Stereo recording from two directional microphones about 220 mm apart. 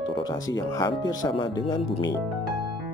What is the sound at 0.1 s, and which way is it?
Speech, 20° left (ahead or behind).